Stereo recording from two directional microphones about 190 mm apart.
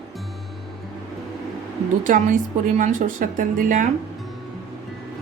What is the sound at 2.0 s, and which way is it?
A woman's voice, 45° right (ahead or behind).